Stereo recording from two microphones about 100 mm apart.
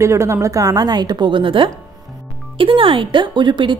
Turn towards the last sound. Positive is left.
turn(degrees=-55)  # may be behind; listen again after turning